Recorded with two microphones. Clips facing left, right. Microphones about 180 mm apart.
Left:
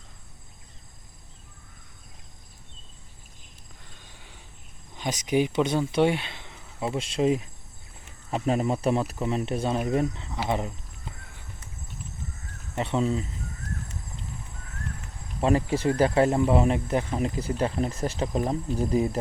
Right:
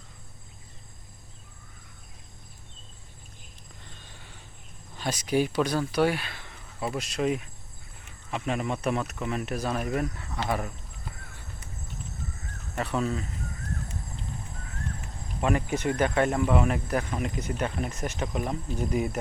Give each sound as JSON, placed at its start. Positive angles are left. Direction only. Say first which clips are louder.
{"t": 4.0, "sound": "a sound", "louder": "right 1 dB", "side_deg": 15}
{"t": 4.9, "sound": "speech", "louder": "left 1 dB", "side_deg": 20}
{"t": 12.7, "sound": "speech", "louder": "left 3 dB", "side_deg": 25}
{"t": 15.4, "sound": "speech", "louder": "left 3 dB", "side_deg": 30}